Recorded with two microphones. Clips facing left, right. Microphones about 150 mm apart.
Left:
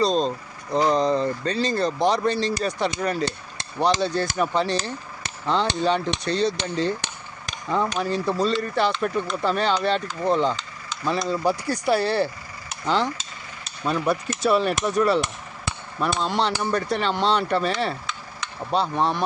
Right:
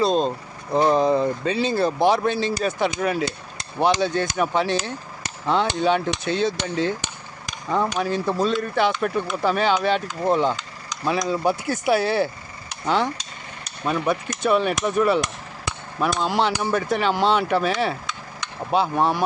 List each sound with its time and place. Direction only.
0.0 s speech: 5° right (ahead or behind)
12.8 s a sound: 10° right (ahead or behind)
13.7 s speech: centre (ahead or behind)